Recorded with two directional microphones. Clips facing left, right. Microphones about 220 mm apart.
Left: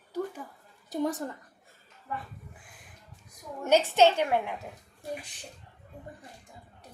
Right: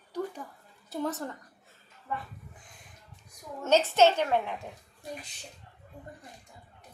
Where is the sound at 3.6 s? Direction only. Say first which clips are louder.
Even; 15° left (ahead or behind).